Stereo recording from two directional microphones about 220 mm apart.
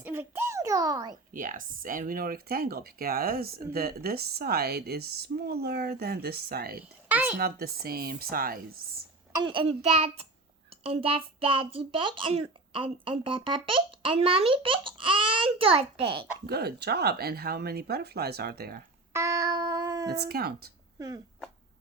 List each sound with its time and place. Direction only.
0.0 s a sound: 10° right (ahead or behind)
1.1 s speech: 35° right (ahead or behind)
7.1 s a sound: 5° right (ahead or behind)
7.3 s speech: 45° right (ahead or behind)
9.3 s a child's voice: 20° right (ahead or behind)
16.5 s speech: 45° right (ahead or behind)
19.1 s child singing: 15° right (ahead or behind)
20.1 s speech: 45° right (ahead or behind)